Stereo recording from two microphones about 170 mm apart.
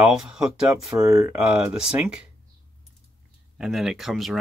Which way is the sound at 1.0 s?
20° right (ahead or behind).